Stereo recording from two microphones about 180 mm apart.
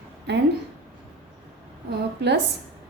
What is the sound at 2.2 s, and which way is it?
Speech, 70° right (ahead or behind).